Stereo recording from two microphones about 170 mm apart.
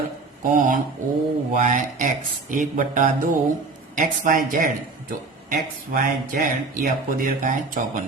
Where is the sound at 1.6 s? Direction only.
50° right (ahead or behind).